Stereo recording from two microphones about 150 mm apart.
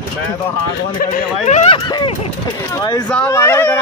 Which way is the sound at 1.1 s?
50° left (ahead or behind).